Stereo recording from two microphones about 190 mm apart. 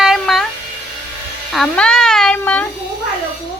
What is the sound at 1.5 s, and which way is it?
Cat, 5° left (ahead or behind).